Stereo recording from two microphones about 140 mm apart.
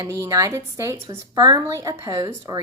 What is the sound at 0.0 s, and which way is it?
A woman's voice, 25° right (ahead or behind).